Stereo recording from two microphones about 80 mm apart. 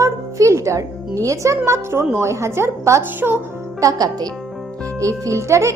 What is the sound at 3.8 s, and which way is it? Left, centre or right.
A woman's voice, right.